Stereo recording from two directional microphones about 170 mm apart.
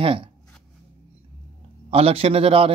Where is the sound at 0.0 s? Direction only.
30° right (ahead or behind).